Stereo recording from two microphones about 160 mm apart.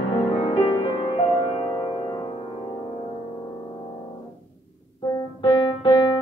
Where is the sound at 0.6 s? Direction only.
30° left (ahead or behind).